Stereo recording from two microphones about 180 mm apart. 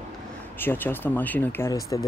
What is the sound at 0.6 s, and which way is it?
Speech, 10° left (ahead or behind).